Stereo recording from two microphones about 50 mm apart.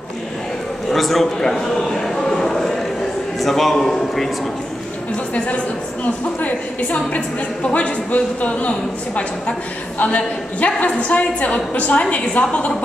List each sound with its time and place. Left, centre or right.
0.9 s a sound: centre
3.3 s a man's voice: centre
5.3 s a woman's voice: left